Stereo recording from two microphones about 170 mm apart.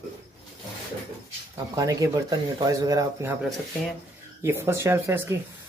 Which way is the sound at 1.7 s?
20° right (ahead or behind).